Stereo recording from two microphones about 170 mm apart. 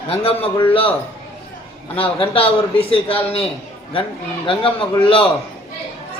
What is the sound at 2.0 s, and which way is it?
Speech, 35° left (ahead or behind).